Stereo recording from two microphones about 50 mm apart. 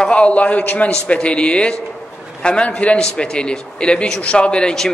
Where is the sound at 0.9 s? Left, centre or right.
Left.